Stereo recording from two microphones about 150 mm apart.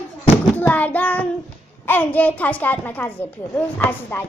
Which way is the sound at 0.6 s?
10° left (ahead or behind).